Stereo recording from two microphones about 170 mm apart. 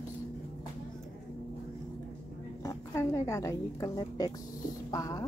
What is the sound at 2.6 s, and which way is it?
A woman's voice, 15° left (ahead or behind).